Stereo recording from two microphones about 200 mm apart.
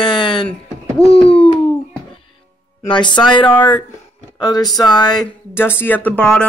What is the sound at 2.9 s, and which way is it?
Speech, 25° left (ahead or behind).